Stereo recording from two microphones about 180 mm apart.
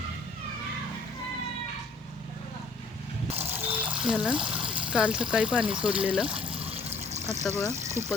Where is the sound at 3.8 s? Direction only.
5° right (ahead or behind).